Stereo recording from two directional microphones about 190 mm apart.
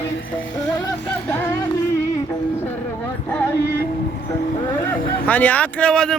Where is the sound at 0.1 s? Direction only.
80° left.